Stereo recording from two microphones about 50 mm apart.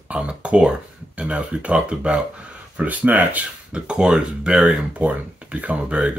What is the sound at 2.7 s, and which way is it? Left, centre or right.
Speech, right.